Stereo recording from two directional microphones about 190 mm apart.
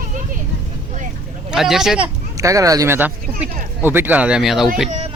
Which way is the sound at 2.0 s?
15° right (ahead or behind).